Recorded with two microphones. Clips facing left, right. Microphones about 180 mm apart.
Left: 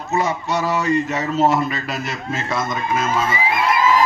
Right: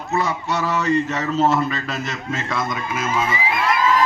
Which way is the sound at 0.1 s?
20° left (ahead or behind).